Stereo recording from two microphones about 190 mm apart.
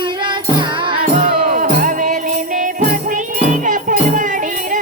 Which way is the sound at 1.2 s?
45° right (ahead or behind).